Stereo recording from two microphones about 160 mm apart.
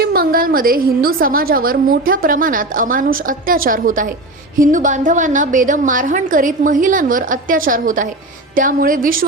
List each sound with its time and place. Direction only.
0.0 s a woman's voice: 65° right (ahead or behind)